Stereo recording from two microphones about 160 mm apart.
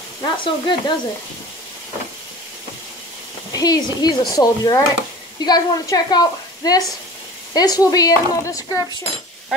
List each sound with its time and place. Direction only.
0.2 s a woman's voice: 30° left (ahead or behind)
3.5 s a woman's voice: 25° left (ahead or behind)